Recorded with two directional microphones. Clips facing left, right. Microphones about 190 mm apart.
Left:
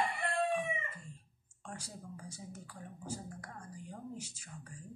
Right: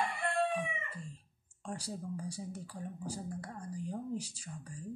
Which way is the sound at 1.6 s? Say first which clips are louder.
Right 7 dB; 35° right (ahead or behind).